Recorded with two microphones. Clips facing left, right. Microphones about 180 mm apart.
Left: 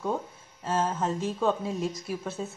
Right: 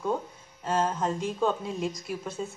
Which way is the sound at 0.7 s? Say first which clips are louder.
Right 1 dB; 5° left (ahead or behind).